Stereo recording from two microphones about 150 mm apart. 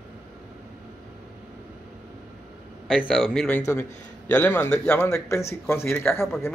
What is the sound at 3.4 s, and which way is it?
Speech, 15° left (ahead or behind).